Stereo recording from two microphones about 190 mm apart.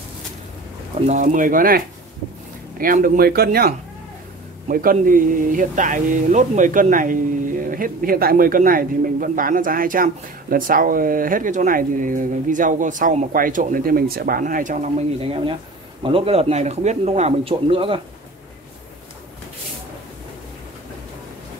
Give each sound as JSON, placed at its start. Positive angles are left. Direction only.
{"t": 0.9, "sound": "speech", "side_deg": -40}
{"t": 2.8, "sound": "a man's voice", "side_deg": -50}